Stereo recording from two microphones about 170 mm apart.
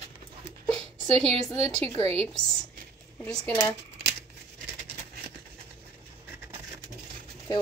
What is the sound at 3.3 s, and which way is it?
Speech, 15° left (ahead or behind).